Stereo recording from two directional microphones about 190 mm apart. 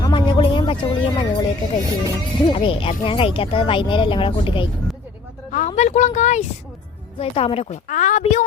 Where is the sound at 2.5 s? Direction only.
30° left (ahead or behind).